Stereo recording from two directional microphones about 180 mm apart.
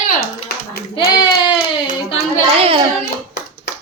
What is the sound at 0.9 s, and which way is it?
Child singing, 25° left (ahead or behind).